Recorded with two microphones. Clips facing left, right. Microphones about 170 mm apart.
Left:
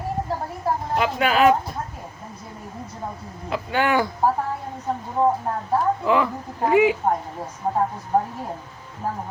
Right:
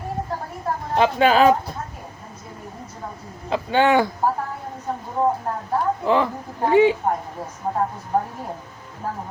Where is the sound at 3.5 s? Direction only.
25° right (ahead or behind).